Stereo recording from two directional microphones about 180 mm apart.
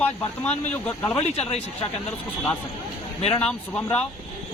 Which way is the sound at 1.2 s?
35° left (ahead or behind).